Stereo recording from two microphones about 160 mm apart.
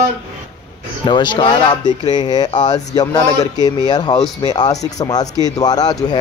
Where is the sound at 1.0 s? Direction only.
30° left (ahead or behind).